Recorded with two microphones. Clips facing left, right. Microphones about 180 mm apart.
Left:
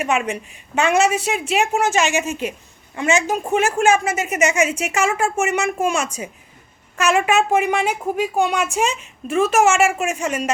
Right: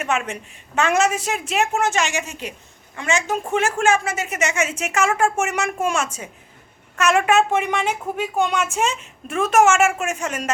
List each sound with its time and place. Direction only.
0.0 s a woman's voice: 10° left (ahead or behind)
2.0 s a woman's voice: 20° left (ahead or behind)